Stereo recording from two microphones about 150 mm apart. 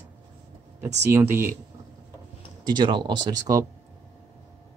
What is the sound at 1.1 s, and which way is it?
Speech, 15° right (ahead or behind).